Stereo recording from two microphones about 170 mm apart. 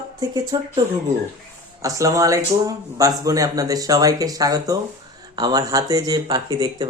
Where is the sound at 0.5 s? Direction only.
25° right (ahead or behind).